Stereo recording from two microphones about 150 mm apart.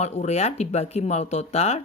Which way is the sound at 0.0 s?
50° left (ahead or behind).